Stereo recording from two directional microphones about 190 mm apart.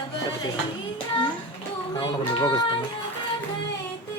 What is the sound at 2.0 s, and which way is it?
Speech, 25° left (ahead or behind).